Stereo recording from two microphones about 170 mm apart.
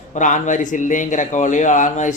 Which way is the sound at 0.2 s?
45° left (ahead or behind).